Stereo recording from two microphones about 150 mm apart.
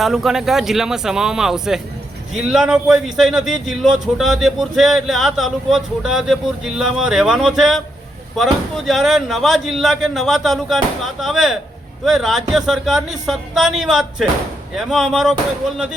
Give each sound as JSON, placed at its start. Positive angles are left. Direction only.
{"t": 0.0, "sound": "speech", "side_deg": 0}
{"t": 8.9, "sound": "speech", "side_deg": 0}